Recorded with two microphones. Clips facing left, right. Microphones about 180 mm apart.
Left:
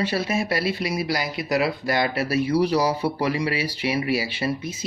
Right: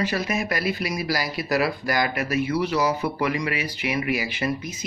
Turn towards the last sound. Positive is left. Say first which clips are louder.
# left 1 dB
turn(degrees=30)  # may be behind; listen again after turning